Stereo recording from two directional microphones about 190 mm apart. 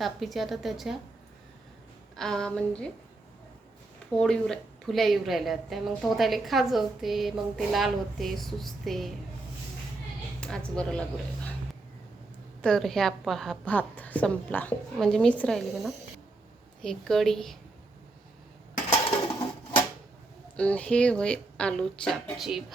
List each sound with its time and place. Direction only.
0.0 s a woman's voice: centre (ahead or behind)
2.1 s a woman's voice: 5° left (ahead or behind)
4.2 s a woman's voice: 5° left (ahead or behind)
10.4 s a sound: 5° left (ahead or behind)
10.8 s a woman's voice: 5° left (ahead or behind)
12.6 s a woman's voice: centre (ahead or behind)
18.7 s dishes: 40° left (ahead or behind)
20.6 s a woman's voice: 5° left (ahead or behind)